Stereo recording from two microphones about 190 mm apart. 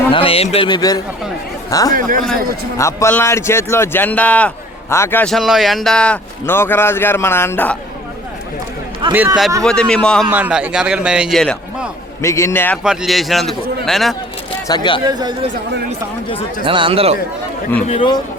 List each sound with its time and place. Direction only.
0.1 s a man's voice: 30° left (ahead or behind)
1.9 s a man's voice: 45° right (ahead or behind)
2.7 s a man's voice: 15° left (ahead or behind)
9.0 s a man's voice: 25° right (ahead or behind)
9.6 s a man's voice: 5° left (ahead or behind)
10.2 s a man's voice: 10° right (ahead or behind)
12.2 s a man's voice: 15° left (ahead or behind)
12.8 s a man's voice: 5° right (ahead or behind)
14.7 s a man's voice: 25° left (ahead or behind)
15.0 s speech: 20° right (ahead or behind)
16.6 s speech: 25° right (ahead or behind)
17.8 s a man's voice: 30° left (ahead or behind)